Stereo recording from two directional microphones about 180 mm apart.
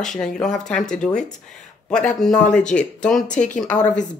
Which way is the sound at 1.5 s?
5° left (ahead or behind).